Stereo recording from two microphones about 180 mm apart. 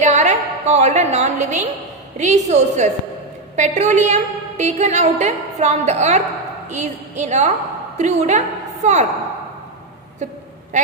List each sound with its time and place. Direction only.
0.0 s a woman's voice: 40° right (ahead or behind)